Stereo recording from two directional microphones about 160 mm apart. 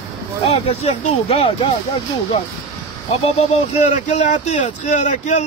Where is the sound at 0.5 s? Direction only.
45° left (ahead or behind).